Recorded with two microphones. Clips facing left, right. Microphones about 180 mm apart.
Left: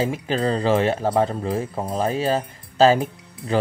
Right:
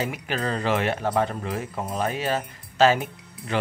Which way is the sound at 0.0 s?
30° left (ahead or behind).